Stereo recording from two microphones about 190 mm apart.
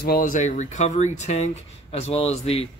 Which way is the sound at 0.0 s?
50° left (ahead or behind).